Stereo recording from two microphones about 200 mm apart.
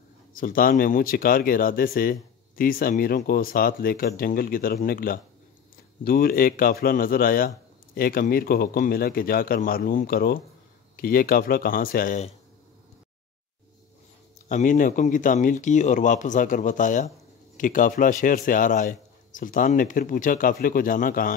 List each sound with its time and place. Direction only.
0.3 s speech: 45° left (ahead or behind)
14.5 s speech: 40° left (ahead or behind)